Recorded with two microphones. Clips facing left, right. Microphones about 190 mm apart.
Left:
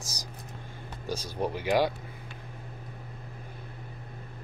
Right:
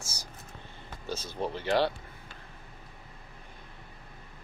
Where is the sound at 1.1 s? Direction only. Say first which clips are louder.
Left 2 dB; 10° left (ahead or behind).